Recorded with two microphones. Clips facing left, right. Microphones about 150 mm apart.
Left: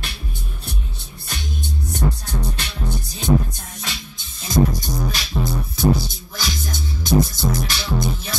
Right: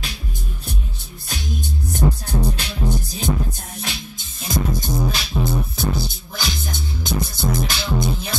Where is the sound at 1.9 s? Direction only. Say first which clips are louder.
Right 4 dB; 10° right (ahead or behind).